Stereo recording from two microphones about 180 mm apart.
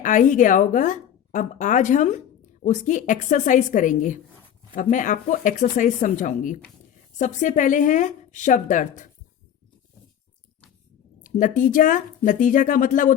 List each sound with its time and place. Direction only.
0.0 s a woman's voice: 45° left (ahead or behind)
11.2 s a woman's voice: 45° left (ahead or behind)